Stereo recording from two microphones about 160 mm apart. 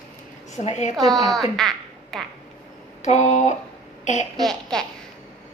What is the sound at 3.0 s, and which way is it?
Speech, 45° left (ahead or behind).